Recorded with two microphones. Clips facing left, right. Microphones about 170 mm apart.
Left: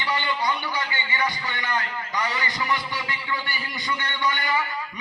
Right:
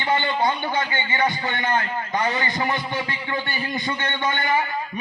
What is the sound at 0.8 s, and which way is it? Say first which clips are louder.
A man's voice: right 5 dB; 50° right (ahead or behind).